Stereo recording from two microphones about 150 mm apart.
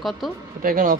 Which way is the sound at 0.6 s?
70° right (ahead or behind).